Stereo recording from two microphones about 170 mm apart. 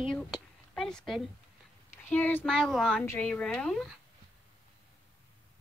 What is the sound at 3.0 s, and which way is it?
Speech, 15° left (ahead or behind).